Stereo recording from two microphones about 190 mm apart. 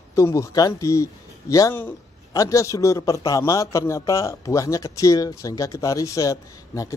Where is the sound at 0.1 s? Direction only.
15° left (ahead or behind).